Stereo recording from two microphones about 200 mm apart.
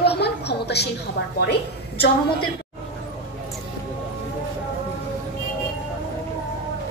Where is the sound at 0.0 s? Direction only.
55° left (ahead or behind).